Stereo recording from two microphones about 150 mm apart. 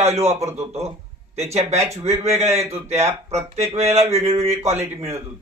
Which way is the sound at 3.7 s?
45° right (ahead or behind).